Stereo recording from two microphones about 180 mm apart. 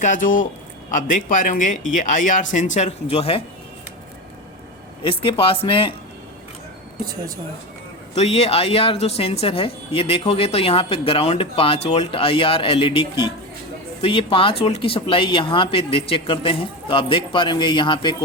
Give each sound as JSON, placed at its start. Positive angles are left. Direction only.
{"t": 0.0, "sound": "speech", "side_deg": 45}
{"t": 5.0, "sound": "speech", "side_deg": 30}
{"t": 8.1, "sound": "speech", "side_deg": 35}